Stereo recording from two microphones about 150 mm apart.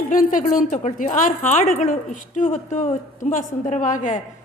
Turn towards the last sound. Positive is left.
turn(degrees=60)  # may be behind; listen again after turning